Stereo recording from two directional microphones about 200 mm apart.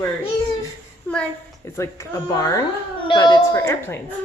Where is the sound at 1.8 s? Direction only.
15° left (ahead or behind).